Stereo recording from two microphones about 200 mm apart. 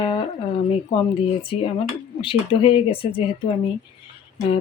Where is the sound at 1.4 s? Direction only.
25° left (ahead or behind).